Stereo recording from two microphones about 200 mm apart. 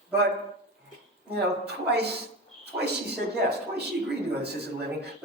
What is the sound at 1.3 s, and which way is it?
A man's voice, 55° right (ahead or behind).